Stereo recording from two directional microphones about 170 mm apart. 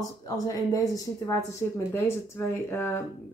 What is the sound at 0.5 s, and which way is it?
Speech, 20° left (ahead or behind).